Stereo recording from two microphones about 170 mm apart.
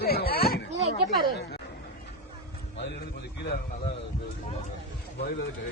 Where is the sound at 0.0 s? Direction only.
65° left (ahead or behind).